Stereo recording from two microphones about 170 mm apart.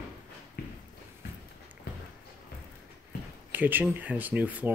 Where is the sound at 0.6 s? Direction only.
65° left (ahead or behind).